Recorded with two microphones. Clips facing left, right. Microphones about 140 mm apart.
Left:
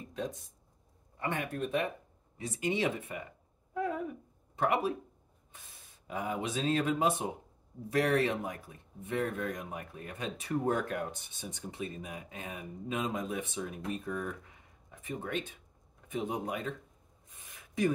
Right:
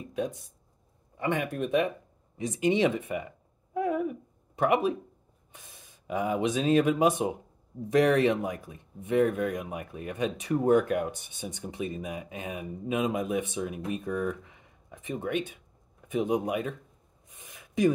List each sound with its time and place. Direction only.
1.2 s speech: 15° right (ahead or behind)
3.7 s a sound: 15° right (ahead or behind)
5.5 s speech: 15° right (ahead or behind)
11.1 s speech: 70° right (ahead or behind)
11.6 s speech: 15° right (ahead or behind)
17.3 s a sound: 15° right (ahead or behind)